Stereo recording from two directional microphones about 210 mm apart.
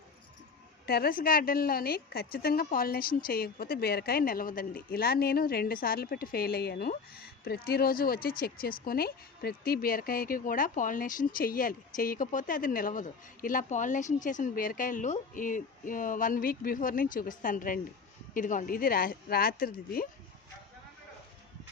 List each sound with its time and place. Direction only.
0.9 s a woman's voice: 45° left (ahead or behind)